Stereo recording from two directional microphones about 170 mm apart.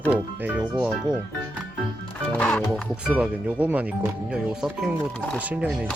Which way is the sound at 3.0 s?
5° right (ahead or behind).